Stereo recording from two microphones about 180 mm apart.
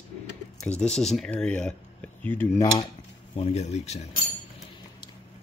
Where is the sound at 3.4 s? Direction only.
35° left (ahead or behind).